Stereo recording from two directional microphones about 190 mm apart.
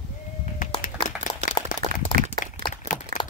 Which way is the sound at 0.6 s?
40° left (ahead or behind).